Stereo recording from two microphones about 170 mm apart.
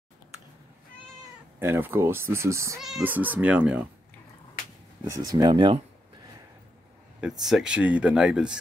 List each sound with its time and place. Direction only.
1.6 s speech: 15° right (ahead or behind)
2.8 s speech: 5° right (ahead or behind)
5.1 s speech: 20° right (ahead or behind)
7.2 s speech: centre (ahead or behind)